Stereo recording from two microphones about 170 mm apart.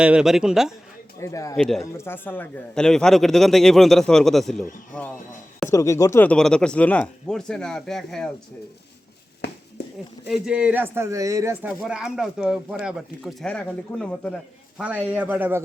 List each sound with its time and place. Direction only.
0.0 s a man's voice: 5° right (ahead or behind)
1.2 s speech: 20° left (ahead or behind)
1.5 s a man's voice: 5° left (ahead or behind)
1.8 s a man's voice: 15° left (ahead or behind)
10.2 s a man's voice: centre (ahead or behind)
14.8 s a man's voice: 10° right (ahead or behind)